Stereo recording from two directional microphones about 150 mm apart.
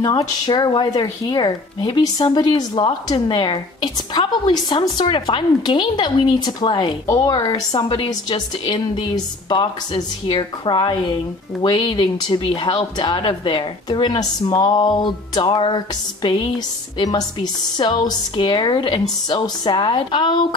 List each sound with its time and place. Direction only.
0.0 s a woman's voice: 30° left (ahead or behind)